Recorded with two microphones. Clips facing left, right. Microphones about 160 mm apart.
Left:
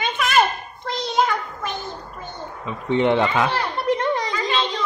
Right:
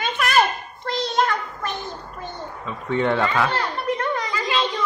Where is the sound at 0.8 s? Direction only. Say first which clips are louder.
Even; centre (ahead or behind).